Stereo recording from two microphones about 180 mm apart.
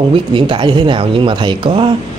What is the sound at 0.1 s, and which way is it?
Speech, 30° right (ahead or behind).